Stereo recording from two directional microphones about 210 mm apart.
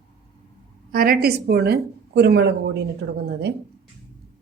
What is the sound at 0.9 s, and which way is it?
Speech, 45° right (ahead or behind).